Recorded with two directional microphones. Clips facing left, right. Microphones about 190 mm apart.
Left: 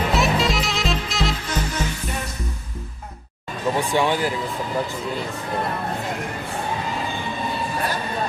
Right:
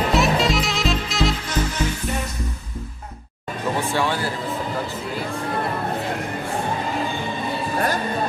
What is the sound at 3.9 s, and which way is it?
Speech, 15° left (ahead or behind).